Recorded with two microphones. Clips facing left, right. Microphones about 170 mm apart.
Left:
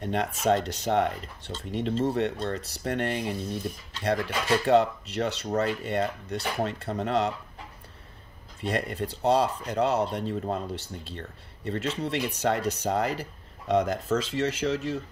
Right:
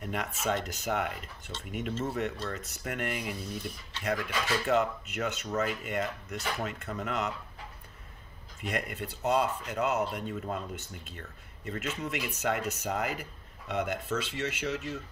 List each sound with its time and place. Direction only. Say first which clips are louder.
0.0 s speech: left 6 dB; 30° left (ahead or behind)
8.5 s speech: left 6 dB; 30° left (ahead or behind)